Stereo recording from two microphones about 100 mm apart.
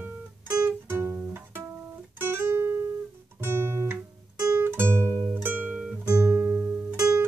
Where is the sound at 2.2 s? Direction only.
25° right (ahead or behind).